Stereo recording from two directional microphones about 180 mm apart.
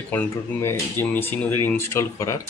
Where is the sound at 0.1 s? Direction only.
10° left (ahead or behind).